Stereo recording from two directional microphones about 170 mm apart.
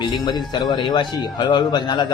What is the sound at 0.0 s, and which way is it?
A man's voice, 25° left (ahead or behind).